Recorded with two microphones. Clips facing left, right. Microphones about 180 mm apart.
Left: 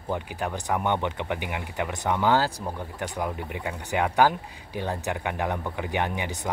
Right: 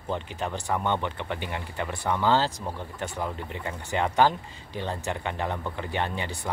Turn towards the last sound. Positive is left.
turn(degrees=15)  # may be behind; listen again after turning